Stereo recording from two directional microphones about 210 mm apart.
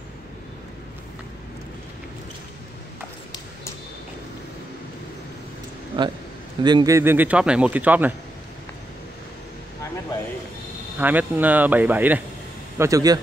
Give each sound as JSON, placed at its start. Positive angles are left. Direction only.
{"t": 6.0, "sound": "a man's voice", "side_deg": -25}
{"t": 11.0, "sound": "speech", "side_deg": -10}